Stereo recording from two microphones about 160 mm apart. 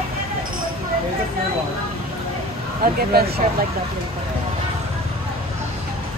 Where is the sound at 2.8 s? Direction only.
70° right (ahead or behind).